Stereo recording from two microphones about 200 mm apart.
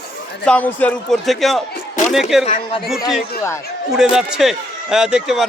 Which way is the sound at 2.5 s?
30° left (ahead or behind).